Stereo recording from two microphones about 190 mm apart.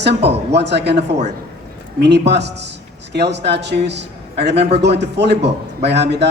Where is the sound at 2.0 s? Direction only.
65° right (ahead or behind).